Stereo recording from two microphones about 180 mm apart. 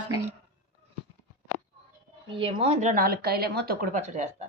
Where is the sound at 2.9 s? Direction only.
55° right (ahead or behind); by 4.4 s 40° right (ahead or behind).